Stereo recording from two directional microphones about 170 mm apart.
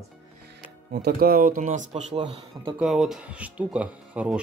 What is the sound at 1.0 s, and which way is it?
Speech, 60° right (ahead or behind).